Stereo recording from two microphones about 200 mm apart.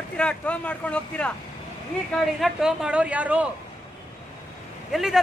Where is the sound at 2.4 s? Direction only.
5° right (ahead or behind).